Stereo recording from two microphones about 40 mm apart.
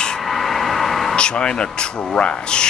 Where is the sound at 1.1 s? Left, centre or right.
Left.